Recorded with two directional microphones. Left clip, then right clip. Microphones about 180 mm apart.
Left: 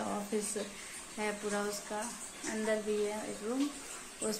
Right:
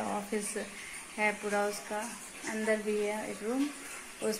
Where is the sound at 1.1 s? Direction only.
25° right (ahead or behind).